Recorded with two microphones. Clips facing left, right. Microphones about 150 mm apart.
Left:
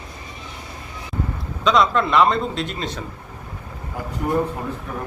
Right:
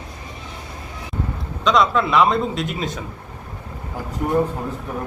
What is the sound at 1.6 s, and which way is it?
A man's voice, centre (ahead or behind).